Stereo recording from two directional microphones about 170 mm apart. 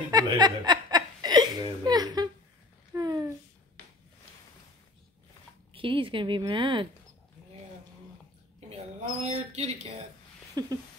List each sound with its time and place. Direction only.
0.1 s chuckle: 25° right (ahead or behind)
2.9 s a sound: 20° right (ahead or behind)
5.7 s a woman's voice: 30° right (ahead or behind)
9.2 s speech: 40° right (ahead or behind)
10.6 s a woman's voice: 20° right (ahead or behind)